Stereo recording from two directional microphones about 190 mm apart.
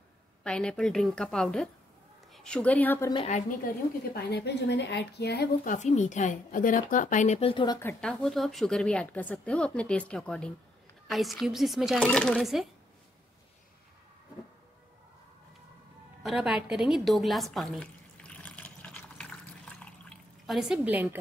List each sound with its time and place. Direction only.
0.4 s a woman's voice: 5° left (ahead or behind)
3.3 s speech: 40° left (ahead or behind)
4.1 s speech: 60° left (ahead or behind)
5.6 s speech: 40° left (ahead or behind); by 7.8 s 25° left (ahead or behind)
7.8 s a woman's voice: 5° left (ahead or behind)
16.2 s a sound: 5° right (ahead or behind)